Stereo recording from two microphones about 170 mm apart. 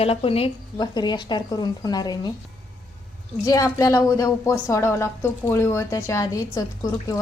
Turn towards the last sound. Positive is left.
turn(degrees=20)  # may be behind; listen again after turning